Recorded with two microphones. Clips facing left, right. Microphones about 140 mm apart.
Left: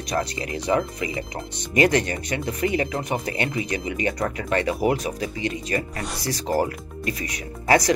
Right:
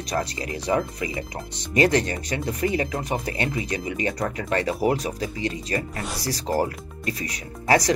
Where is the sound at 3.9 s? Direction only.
35° right (ahead or behind).